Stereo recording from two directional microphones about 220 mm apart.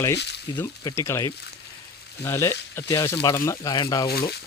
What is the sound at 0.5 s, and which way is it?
Speech, 10° left (ahead or behind).